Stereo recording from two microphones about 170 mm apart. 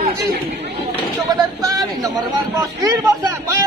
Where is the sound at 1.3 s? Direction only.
20° right (ahead or behind).